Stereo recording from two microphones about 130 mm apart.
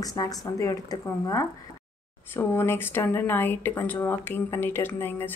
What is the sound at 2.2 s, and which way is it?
Speech, 15° left (ahead or behind).